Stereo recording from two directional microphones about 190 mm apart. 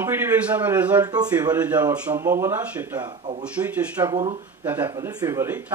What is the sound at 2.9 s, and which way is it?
Speech, 25° right (ahead or behind).